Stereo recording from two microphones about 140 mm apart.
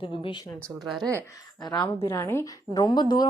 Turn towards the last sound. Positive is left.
turn(degrees=30)  # may be behind; listen again after turning